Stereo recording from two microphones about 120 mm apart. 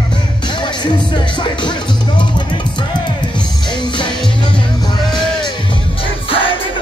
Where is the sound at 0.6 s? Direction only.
40° left (ahead or behind).